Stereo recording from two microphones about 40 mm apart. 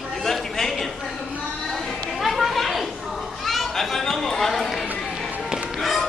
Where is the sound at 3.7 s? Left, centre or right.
Centre.